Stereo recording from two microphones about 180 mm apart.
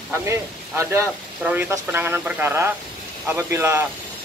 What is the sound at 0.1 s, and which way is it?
Speech, 15° right (ahead or behind).